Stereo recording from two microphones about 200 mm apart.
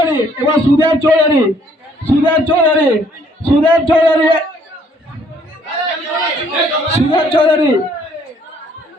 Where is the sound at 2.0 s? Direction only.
10° left (ahead or behind).